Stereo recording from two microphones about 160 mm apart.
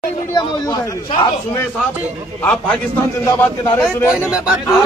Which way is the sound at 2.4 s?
10° left (ahead or behind).